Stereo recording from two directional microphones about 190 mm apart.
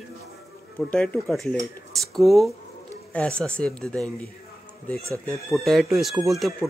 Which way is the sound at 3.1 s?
5° left (ahead or behind).